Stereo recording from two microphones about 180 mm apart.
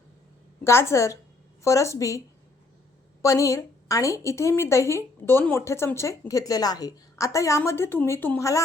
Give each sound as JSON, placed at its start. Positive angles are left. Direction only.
{"t": 0.6, "sound": "a woman's voice", "side_deg": 15}